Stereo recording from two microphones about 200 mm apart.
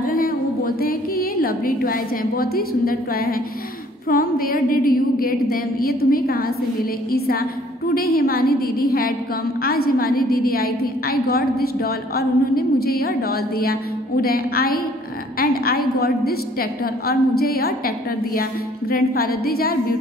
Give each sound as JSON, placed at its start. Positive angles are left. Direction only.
{"t": 0.1, "sound": "a woman's voice", "side_deg": 45}